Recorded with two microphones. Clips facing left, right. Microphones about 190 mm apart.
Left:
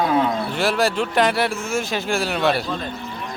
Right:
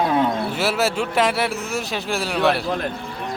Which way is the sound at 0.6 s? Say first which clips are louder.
Left 3 dB; 5° right (ahead or behind).